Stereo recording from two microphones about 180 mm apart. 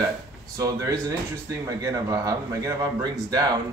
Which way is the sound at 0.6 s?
15° right (ahead or behind).